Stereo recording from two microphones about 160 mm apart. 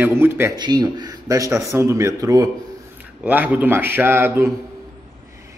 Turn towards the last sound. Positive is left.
turn(degrees=-15)  # may be behind; listen again after turning